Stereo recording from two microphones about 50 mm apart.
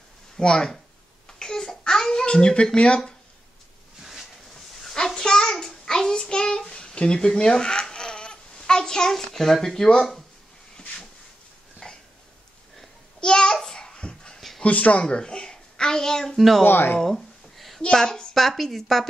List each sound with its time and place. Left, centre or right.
0.4 s speech: centre
1.4 s child singing: centre
2.2 s speech: centre
4.0 s a sound: centre
4.8 s child singing: centre
5.9 s a sound: centre
9.9 s a woman's voice: centre
11.8 s dog: centre
13.2 s babbling: centre
14.6 s a woman's voice: left; by 16.6 s centre
16.6 s speech: left
17.0 s a sound: centre
17.9 s a woman's voice: centre